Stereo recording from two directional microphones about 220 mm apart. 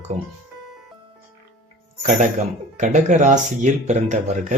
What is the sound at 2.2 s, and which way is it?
Speech, 35° right (ahead or behind).